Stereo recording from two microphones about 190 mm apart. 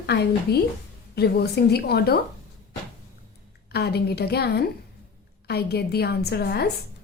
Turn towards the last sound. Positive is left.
turn(degrees=60)  # may be behind; listen again after turning